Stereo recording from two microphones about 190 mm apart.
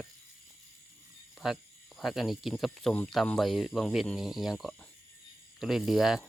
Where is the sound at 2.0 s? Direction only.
Centre (ahead or behind).